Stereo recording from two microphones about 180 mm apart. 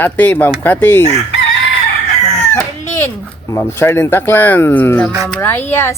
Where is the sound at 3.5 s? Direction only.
15° left (ahead or behind).